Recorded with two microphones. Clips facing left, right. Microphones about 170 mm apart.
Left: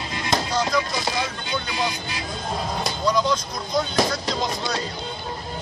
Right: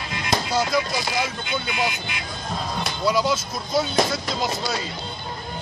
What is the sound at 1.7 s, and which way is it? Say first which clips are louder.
Speech: even; 35° left (ahead or behind).